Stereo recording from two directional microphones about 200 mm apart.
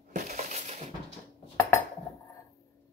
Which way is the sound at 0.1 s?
35° right (ahead or behind).